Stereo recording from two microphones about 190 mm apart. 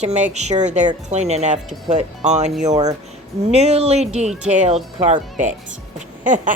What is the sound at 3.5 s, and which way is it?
Speech, 35° right (ahead or behind).